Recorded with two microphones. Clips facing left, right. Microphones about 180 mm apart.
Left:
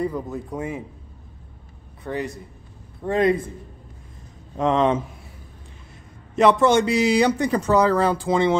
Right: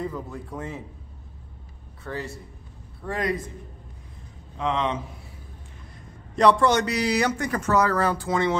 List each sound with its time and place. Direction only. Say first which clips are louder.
0.0 s speech: left 6 dB; 15° left (ahead or behind)
2.0 s a man's voice: left 5 dB; 15° left (ahead or behind)
4.6 s speech: left 7 dB; 45° left (ahead or behind)
6.3 s a man's voice: left 3 dB; 25° left (ahead or behind)
8.3 s a man's voice: left 6 dB; 25° left (ahead or behind)